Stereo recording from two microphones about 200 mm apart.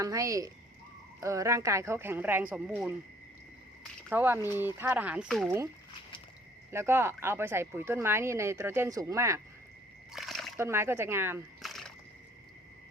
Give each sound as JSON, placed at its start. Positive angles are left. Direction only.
{"t": 0.0, "sound": "speech", "side_deg": -15}
{"t": 4.1, "sound": "speech", "side_deg": -10}
{"t": 6.7, "sound": "speech", "side_deg": -10}
{"t": 10.1, "sound": "splash", "side_deg": 0}
{"t": 10.6, "sound": "speech", "side_deg": -15}
{"t": 11.6, "sound": "a sound", "side_deg": 0}